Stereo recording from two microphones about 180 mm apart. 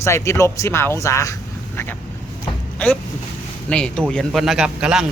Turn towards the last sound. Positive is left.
turn(degrees=-5)  # may be behind; listen again after turning